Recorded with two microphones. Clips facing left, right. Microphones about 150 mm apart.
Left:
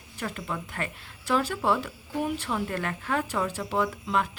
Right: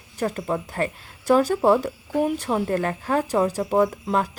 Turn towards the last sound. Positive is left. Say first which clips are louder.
# right 6 dB
turn(degrees=-40)  # may be behind; listen again after turning